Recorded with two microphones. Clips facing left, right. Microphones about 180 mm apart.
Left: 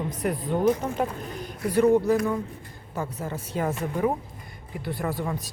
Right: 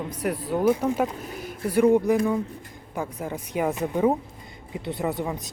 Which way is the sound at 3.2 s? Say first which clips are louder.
Right 3 dB; 15° right (ahead or behind).